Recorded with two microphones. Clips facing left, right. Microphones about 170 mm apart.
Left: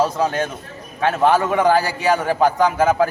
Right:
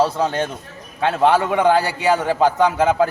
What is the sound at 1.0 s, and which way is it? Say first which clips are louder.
A man's voice: even; 15° right (ahead or behind).